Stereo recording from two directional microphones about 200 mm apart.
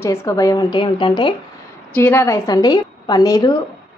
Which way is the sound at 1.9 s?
10° left (ahead or behind).